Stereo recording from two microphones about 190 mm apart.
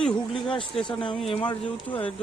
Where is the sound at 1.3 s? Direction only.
30° left (ahead or behind).